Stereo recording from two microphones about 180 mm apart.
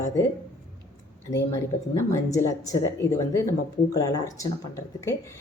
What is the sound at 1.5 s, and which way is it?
Speech, 20° left (ahead or behind).